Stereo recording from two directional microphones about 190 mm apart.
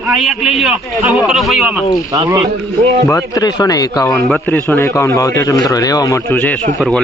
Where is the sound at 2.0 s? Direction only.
15° right (ahead or behind).